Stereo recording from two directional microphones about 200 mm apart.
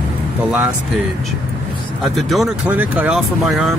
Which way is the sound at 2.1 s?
Centre (ahead or behind).